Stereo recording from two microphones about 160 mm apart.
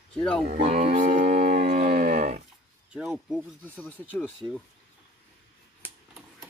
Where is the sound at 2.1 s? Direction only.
50° right (ahead or behind).